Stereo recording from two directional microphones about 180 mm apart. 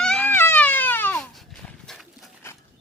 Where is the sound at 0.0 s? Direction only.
5° left (ahead or behind).